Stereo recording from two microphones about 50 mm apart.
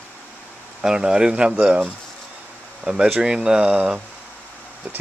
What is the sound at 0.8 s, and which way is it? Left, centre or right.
Speech, centre.